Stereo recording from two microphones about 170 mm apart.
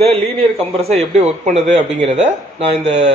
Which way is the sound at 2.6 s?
40° right (ahead or behind).